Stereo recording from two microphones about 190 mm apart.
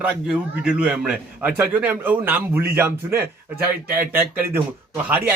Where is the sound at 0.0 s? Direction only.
5° right (ahead or behind).